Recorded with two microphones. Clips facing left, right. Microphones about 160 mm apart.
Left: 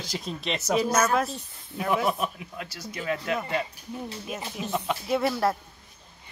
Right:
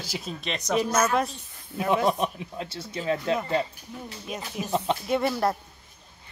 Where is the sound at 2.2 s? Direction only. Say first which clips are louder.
Right 3 dB; 25° right (ahead or behind).